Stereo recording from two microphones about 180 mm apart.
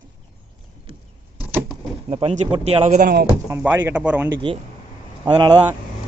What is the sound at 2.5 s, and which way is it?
Speech, 35° right (ahead or behind).